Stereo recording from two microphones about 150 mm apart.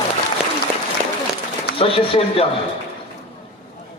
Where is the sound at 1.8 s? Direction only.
40° left (ahead or behind).